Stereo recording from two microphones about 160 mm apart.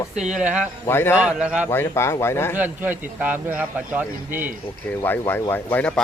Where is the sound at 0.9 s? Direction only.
15° left (ahead or behind).